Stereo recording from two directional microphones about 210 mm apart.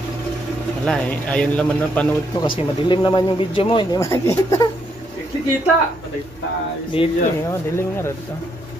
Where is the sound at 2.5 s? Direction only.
20° left (ahead or behind).